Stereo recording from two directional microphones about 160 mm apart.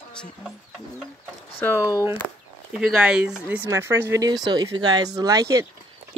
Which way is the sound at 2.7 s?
5° right (ahead or behind).